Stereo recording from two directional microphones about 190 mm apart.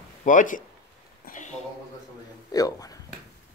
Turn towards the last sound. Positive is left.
turn(degrees=20)  # may be behind; listen again after turning